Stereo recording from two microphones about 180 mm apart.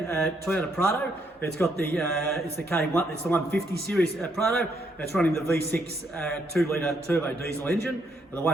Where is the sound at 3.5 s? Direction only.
60° right (ahead or behind).